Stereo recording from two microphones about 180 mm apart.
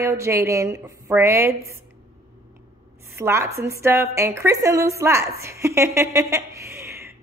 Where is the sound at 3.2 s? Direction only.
15° right (ahead or behind).